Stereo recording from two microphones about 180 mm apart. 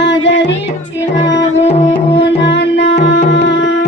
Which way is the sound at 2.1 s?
80° left.